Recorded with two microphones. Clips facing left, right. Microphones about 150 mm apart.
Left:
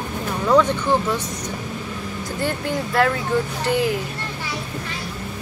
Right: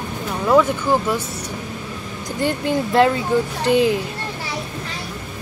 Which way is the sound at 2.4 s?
20° right (ahead or behind).